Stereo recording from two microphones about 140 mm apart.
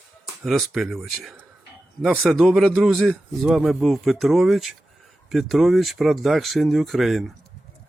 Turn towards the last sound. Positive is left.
turn(degrees=0)  # may be behind; listen again after turning